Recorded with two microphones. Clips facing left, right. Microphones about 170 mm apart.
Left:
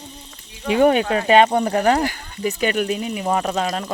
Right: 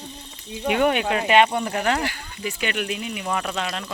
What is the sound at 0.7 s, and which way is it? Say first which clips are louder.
Speech: left 5 dB; 35° left (ahead or behind).